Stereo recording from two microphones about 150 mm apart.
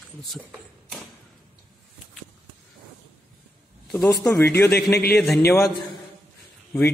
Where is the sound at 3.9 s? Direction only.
5° left (ahead or behind).